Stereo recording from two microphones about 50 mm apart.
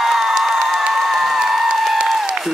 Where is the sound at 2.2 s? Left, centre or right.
Centre.